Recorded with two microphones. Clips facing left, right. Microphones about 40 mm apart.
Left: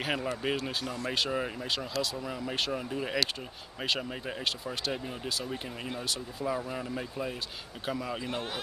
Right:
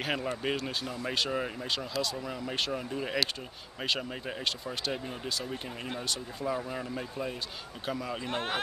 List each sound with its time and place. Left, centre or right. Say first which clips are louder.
0.0 s speech: even; centre
8.3 s speech: right 2 dB; right